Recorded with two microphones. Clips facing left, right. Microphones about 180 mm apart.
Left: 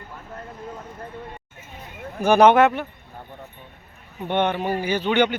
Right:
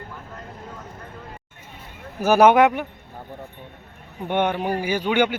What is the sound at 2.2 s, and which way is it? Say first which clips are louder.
Speech: even; 10° right (ahead or behind).